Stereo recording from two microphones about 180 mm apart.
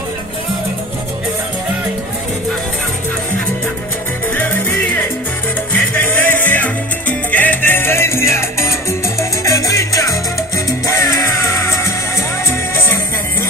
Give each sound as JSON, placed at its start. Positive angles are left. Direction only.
{"t": 4.4, "sound": "music", "side_deg": 10}
{"t": 5.7, "sound": "salsa music", "side_deg": 10}
{"t": 9.2, "sound": "music", "side_deg": 15}